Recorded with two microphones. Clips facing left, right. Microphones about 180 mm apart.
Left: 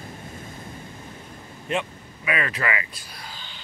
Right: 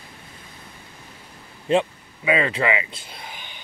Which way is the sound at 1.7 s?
25° right (ahead or behind).